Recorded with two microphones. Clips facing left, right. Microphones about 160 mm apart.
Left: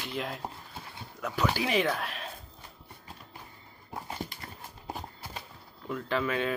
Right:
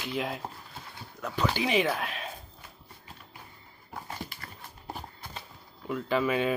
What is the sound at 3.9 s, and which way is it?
Dog, 20° left (ahead or behind).